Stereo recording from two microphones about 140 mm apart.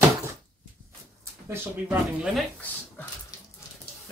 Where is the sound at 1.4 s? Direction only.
15° right (ahead or behind).